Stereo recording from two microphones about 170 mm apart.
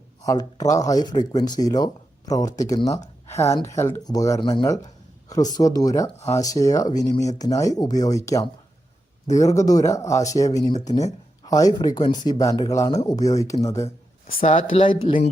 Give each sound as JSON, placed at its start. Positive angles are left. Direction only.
{"t": 0.8, "sound": "speech", "side_deg": 20}
{"t": 14.4, "sound": "speech", "side_deg": 40}